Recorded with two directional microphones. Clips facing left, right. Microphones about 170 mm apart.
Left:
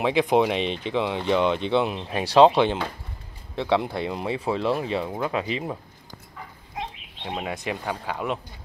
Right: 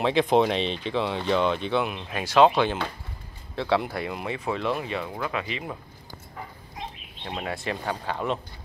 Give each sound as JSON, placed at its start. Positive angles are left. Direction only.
{"t": 0.0, "sound": "speech", "side_deg": 15}
{"t": 7.3, "sound": "speech", "side_deg": 15}
{"t": 7.8, "sound": "speech", "side_deg": 5}